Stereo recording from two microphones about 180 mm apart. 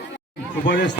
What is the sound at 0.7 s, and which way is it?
Speech, 70° left (ahead or behind).